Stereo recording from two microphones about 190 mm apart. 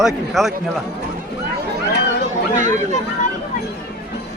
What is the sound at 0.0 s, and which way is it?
Speech, centre (ahead or behind).